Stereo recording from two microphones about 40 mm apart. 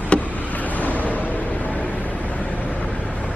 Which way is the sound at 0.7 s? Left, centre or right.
Left.